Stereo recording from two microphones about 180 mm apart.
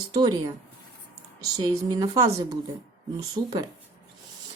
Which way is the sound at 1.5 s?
20° right (ahead or behind).